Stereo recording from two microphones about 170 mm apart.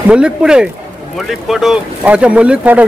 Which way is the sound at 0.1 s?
5° right (ahead or behind).